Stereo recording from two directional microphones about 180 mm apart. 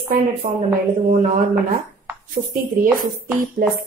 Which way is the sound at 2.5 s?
50° right (ahead or behind).